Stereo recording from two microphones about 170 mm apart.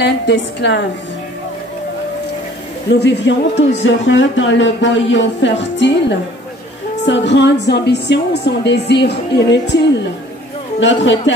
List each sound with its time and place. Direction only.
0.0 s speech: 90° left
2.9 s a woman's voice: 85° left